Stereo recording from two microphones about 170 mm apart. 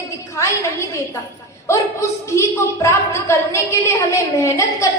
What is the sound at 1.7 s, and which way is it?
A woman's voice, 15° left (ahead or behind).